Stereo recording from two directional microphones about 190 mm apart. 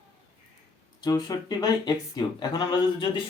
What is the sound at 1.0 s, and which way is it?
Speech, 20° left (ahead or behind).